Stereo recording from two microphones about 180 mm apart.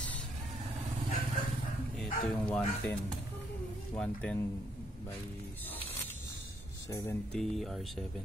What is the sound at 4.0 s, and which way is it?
Speech, 5° left (ahead or behind).